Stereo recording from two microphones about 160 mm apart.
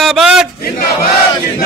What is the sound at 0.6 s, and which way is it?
Battle cry, 65° left (ahead or behind).